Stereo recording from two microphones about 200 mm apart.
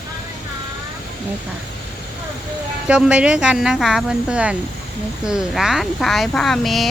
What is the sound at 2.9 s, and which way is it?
Speech, 5° right (ahead or behind).